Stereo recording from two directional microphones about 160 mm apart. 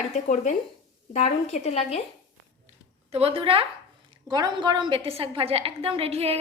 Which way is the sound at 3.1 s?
40° right (ahead or behind).